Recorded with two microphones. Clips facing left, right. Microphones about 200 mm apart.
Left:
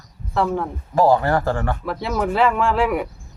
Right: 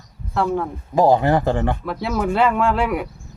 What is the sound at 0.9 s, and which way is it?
Speech, 20° right (ahead or behind).